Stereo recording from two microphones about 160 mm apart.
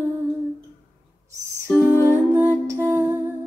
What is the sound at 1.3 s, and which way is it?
Music, 15° right (ahead or behind).